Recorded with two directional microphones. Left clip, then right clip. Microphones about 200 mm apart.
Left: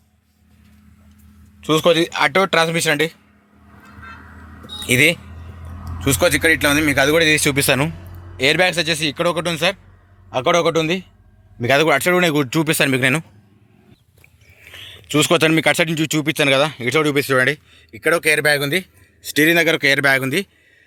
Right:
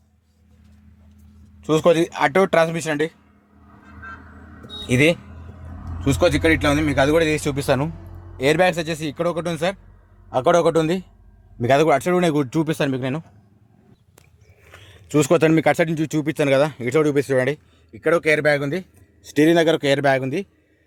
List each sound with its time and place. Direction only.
1.6 s speech: 5° right (ahead or behind)
4.8 s speech: 10° left (ahead or behind)
8.4 s speech: 5° right (ahead or behind)
10.4 s a man's voice: 20° right (ahead or behind)
11.6 s speech: 5° right (ahead or behind)
12.7 s speech: 15° left (ahead or behind)
14.6 s speech: centre (ahead or behind)